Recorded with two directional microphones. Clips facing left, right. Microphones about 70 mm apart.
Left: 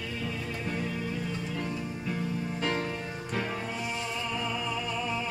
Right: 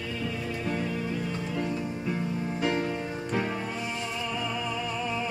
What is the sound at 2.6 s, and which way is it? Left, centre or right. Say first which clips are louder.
Music: right 3 dB; centre.